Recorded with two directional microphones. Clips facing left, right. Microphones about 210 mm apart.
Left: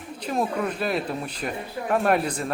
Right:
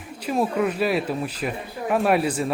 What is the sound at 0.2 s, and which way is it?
Speech, 5° right (ahead or behind).